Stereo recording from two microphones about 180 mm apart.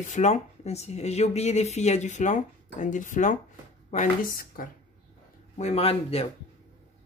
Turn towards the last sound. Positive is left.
turn(degrees=35)  # may be behind; listen again after turning